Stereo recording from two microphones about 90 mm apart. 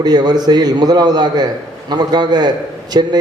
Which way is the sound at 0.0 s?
50° right (ahead or behind).